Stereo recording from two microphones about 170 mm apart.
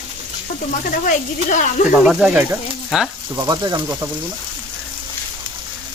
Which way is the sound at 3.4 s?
25° right (ahead or behind).